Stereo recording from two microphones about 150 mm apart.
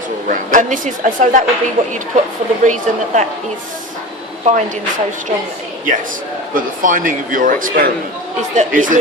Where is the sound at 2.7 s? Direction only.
50° right (ahead or behind).